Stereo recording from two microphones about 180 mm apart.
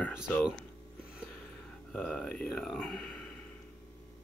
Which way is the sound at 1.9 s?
5° left (ahead or behind).